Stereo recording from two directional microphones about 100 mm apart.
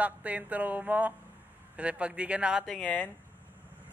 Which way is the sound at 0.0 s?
15° right (ahead or behind).